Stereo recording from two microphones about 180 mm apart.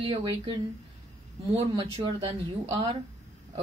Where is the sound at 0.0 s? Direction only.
25° right (ahead or behind).